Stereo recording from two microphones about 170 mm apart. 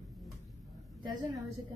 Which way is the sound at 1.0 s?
25° right (ahead or behind).